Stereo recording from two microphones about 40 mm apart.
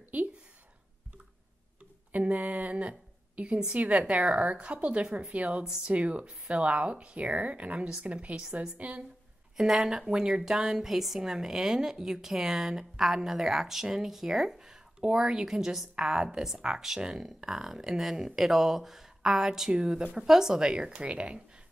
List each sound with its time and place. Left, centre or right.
0.1 s a sound: right
2.1 s a sound: right
3.5 s speech: right
4.1 s a woman's voice: right
9.6 s a woman's voice: centre
10.4 s a woman's voice: centre
20.2 s a woman's voice: centre; by 21.4 s right